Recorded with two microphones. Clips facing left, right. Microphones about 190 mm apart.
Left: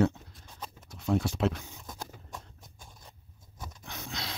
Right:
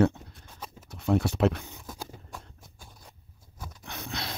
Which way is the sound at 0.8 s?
65° right (ahead or behind).